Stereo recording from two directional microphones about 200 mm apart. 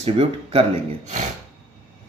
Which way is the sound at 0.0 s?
30° right (ahead or behind).